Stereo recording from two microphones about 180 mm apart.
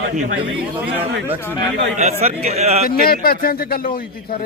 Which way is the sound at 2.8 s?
55° left (ahead or behind).